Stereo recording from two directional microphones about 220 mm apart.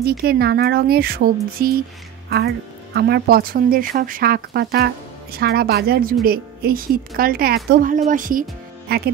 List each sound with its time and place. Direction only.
0.0 s a woman's voice: 45° right (ahead or behind)